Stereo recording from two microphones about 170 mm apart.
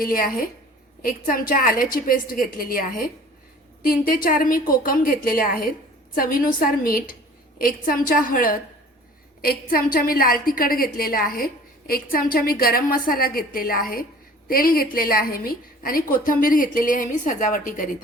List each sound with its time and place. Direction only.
0.0 s a woman's voice: 55° left (ahead or behind)